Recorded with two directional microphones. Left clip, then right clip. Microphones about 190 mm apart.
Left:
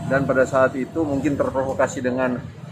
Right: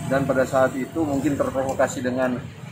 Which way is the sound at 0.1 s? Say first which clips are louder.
Left 2 dB; 15° left (ahead or behind).